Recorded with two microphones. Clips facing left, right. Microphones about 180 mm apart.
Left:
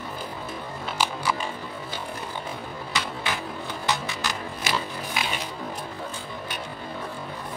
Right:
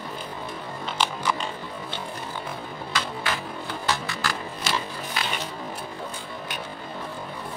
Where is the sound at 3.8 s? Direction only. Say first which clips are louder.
Even; 20° left (ahead or behind).